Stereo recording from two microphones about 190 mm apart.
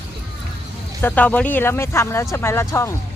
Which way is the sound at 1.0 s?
10° left (ahead or behind).